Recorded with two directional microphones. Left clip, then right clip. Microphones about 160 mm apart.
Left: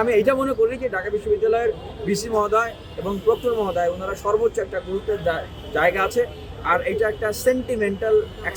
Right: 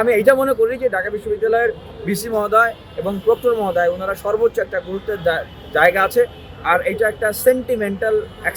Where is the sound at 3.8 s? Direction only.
15° left (ahead or behind).